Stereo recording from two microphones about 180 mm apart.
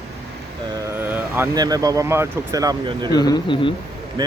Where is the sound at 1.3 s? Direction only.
15° right (ahead or behind).